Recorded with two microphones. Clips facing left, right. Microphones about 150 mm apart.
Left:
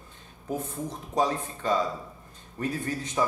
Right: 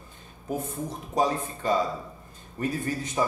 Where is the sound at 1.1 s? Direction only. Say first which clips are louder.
Right 1 dB; 10° right (ahead or behind).